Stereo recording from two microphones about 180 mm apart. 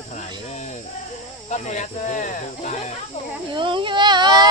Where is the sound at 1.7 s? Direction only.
45° left (ahead or behind).